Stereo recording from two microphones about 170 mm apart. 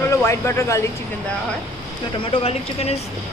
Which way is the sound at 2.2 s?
35° left (ahead or behind).